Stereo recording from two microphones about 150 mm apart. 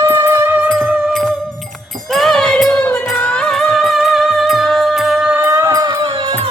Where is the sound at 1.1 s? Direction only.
5° left (ahead or behind); by 5.9 s 20° right (ahead or behind).